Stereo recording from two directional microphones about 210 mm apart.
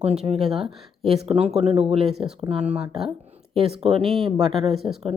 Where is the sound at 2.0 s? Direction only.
Centre (ahead or behind).